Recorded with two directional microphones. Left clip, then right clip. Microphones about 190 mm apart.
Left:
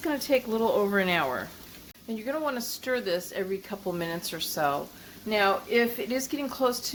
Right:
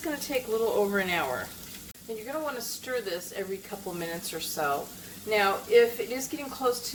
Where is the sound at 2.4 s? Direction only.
50° left (ahead or behind).